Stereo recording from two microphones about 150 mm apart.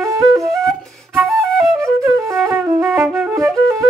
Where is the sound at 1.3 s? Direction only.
Centre (ahead or behind).